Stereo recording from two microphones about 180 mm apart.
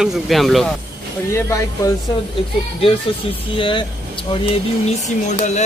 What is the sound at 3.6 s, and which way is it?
Speech, 25° left (ahead or behind).